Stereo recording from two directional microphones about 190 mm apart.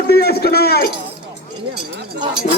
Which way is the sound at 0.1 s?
55° left (ahead or behind).